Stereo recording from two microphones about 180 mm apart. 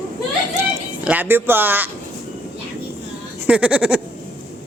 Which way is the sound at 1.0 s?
10° right (ahead or behind).